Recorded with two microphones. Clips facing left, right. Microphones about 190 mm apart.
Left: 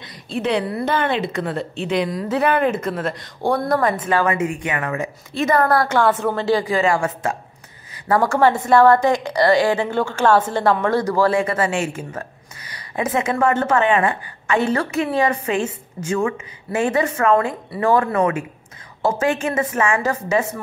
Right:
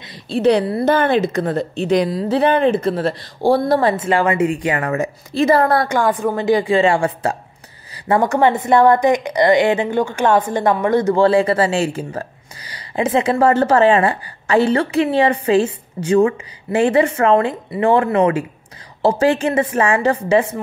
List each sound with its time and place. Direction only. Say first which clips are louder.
0.3 s a woman's voice: right 6 dB; 35° right (ahead or behind)
5.9 s a woman's voice: right 1 dB; 15° right (ahead or behind)
6.6 s a woman's voice: right 4 dB; 30° right (ahead or behind)
7.9 s a woman's voice: right 2 dB; 20° right (ahead or behind)